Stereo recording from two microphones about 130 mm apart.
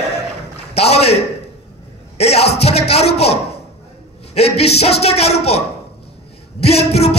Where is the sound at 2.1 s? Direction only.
55° left (ahead or behind).